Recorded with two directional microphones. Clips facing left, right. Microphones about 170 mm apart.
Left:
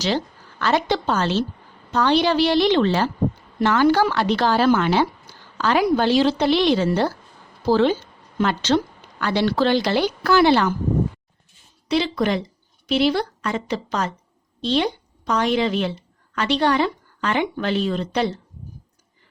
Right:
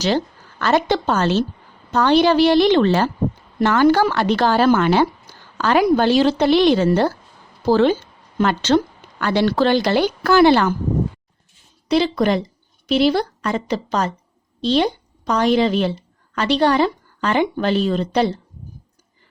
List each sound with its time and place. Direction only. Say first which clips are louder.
0.6 s a woman's voice: right 3 dB; 50° right (ahead or behind)
11.9 s a woman's voice: right 4 dB; 40° right (ahead or behind)